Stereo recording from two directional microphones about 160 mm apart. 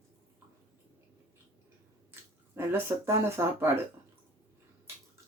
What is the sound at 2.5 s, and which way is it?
Speech, 15° right (ahead or behind).